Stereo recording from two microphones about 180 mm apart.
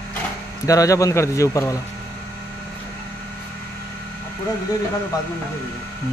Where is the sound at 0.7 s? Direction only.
20° left (ahead or behind).